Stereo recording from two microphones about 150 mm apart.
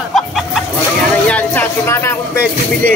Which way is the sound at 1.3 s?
15° left (ahead or behind).